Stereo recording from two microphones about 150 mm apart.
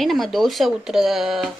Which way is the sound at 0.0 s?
Centre (ahead or behind).